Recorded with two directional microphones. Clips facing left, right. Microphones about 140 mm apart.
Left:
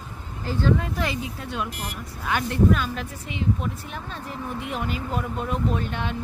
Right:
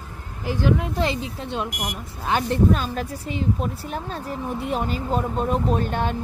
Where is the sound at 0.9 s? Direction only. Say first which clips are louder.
Right 4 dB; 25° right (ahead or behind).